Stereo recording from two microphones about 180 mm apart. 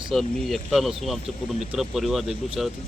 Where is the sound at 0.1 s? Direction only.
Centre (ahead or behind).